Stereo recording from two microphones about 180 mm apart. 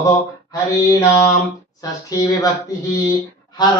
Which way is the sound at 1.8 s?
20° left (ahead or behind).